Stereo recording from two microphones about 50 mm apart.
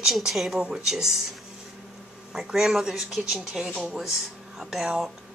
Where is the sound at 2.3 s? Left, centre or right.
Centre.